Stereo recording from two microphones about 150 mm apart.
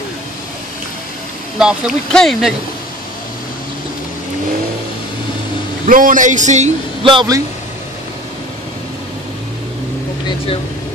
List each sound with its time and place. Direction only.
1.6 s speech: 5° right (ahead or behind)
5.9 s a man's voice: 65° right (ahead or behind)
7.1 s a man's voice: 25° right (ahead or behind)